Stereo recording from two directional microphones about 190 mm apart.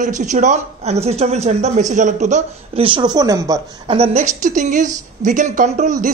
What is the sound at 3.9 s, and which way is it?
Speech, 35° right (ahead or behind).